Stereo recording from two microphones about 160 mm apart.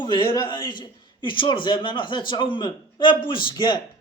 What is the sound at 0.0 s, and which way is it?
A man's voice, 30° left (ahead or behind).